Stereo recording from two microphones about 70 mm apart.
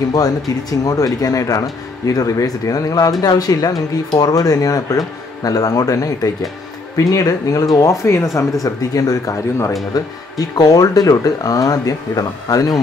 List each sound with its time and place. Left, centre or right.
0.1 s speech: left
8.6 s speech: left
9.9 s speech: left